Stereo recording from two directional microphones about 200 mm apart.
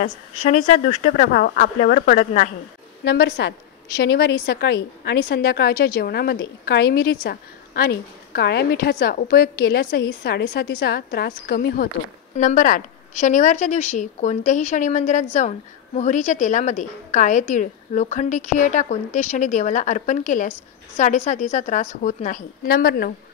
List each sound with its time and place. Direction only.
0.0 s a woman's voice: 35° left (ahead or behind)
1.2 s a woman's voice: 50° left (ahead or behind)
3.0 s a woman's voice: 55° left (ahead or behind)